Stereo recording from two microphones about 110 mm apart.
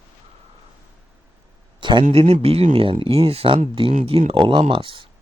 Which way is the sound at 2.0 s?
65° right (ahead or behind).